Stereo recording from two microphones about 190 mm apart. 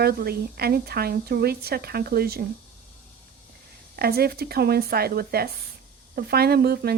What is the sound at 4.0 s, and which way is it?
Speech, 55° right (ahead or behind).